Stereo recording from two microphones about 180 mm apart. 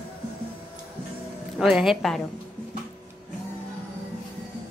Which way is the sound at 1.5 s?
Centre (ahead or behind).